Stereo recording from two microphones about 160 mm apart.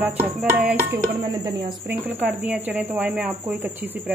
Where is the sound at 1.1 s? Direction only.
25° right (ahead or behind).